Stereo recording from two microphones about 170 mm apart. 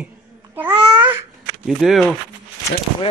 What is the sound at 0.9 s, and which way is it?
Babbling, 10° right (ahead or behind).